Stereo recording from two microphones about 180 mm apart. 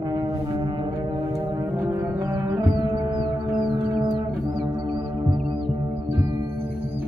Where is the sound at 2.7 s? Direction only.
25° right (ahead or behind).